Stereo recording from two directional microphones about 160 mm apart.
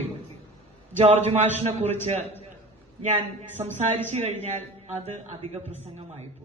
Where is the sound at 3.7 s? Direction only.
45° right (ahead or behind).